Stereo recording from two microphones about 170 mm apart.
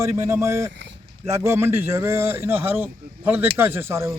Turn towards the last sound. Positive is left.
turn(degrees=-15)  # may be behind; listen again after turning